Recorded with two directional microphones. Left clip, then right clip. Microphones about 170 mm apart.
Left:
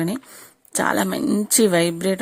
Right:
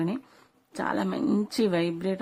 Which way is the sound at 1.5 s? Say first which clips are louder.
Left 12 dB; 30° left (ahead or behind).